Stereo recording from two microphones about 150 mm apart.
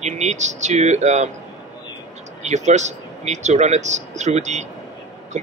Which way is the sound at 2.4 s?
50° right (ahead or behind).